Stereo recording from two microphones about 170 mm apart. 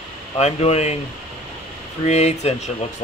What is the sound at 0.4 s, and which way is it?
Speech, 40° left (ahead or behind).